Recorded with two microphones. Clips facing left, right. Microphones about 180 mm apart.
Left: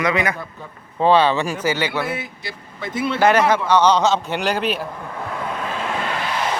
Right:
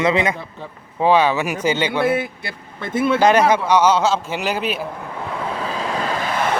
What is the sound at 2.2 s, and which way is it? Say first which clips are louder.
Speech: right 6 dB; 55° right (ahead or behind).